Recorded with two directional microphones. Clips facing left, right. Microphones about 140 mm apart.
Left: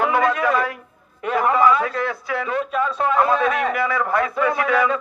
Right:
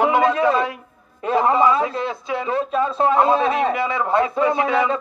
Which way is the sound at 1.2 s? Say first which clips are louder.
Right 1 dB; 25° right (ahead or behind).